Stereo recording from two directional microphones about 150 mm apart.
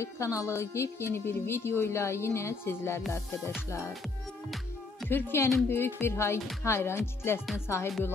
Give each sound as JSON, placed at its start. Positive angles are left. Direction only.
{"t": 0.0, "sound": "a woman's voice", "side_deg": 20}
{"t": 5.1, "sound": "a woman's voice", "side_deg": 15}